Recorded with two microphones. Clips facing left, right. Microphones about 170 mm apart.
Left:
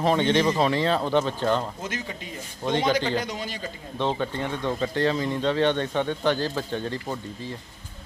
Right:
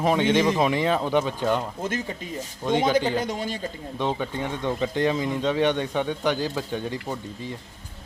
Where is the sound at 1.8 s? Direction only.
50° right (ahead or behind).